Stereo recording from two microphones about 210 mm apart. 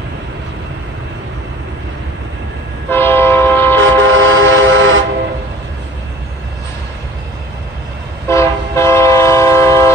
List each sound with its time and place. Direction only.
2.9 s train: 10° left (ahead or behind)
4.0 s train: 65° right (ahead or behind)
8.3 s train: 15° left (ahead or behind)